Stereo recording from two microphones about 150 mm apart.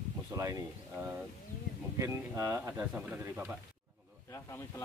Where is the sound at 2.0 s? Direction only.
20° right (ahead or behind).